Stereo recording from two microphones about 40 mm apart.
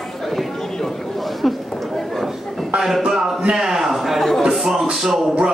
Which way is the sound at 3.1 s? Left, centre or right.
Centre.